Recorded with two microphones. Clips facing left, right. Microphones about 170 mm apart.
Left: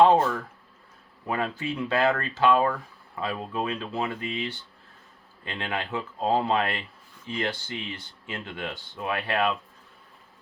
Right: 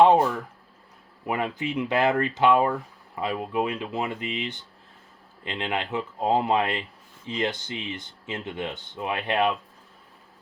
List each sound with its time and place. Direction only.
0.0 s speech: 15° right (ahead or behind)